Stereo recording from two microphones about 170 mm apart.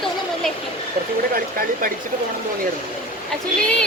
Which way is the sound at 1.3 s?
60° right (ahead or behind).